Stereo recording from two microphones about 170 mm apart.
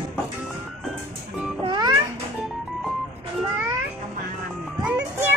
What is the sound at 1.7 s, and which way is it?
Music, 25° right (ahead or behind).